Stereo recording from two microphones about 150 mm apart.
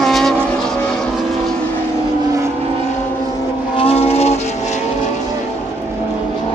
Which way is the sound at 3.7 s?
40° left (ahead or behind).